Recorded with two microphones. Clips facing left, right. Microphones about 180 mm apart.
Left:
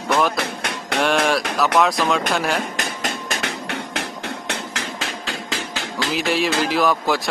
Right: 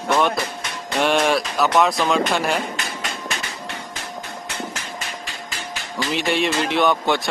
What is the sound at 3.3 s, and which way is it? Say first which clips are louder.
Music: left 5 dB; 70° left (ahead or behind).